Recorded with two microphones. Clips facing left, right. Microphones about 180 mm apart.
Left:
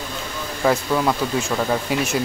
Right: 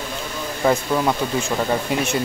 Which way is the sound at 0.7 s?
5° right (ahead or behind).